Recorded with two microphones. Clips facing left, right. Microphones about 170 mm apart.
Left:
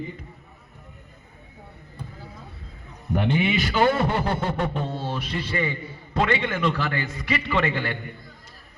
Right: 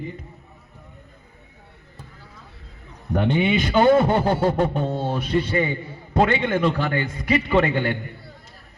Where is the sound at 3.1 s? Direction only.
30° right (ahead or behind).